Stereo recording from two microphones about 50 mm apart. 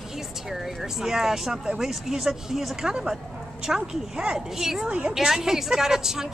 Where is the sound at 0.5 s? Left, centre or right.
Centre.